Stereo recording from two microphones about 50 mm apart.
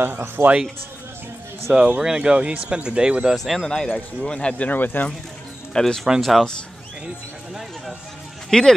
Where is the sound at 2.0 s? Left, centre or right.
Centre.